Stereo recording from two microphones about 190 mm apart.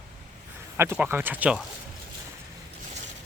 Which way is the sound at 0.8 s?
10° right (ahead or behind).